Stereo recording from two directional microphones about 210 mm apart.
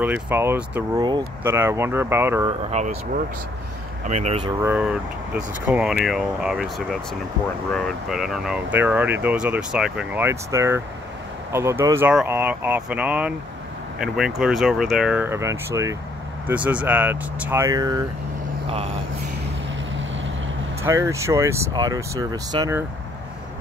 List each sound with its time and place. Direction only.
0.0 s speech: 10° right (ahead or behind)
2.8 s speech: 30° right (ahead or behind)
4.1 s speech: 30° right (ahead or behind)
4.6 s speech: 5° right (ahead or behind)
20.8 s speech: 15° right (ahead or behind)